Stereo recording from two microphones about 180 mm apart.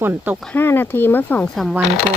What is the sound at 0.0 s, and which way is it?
Speech, 10° right (ahead or behind).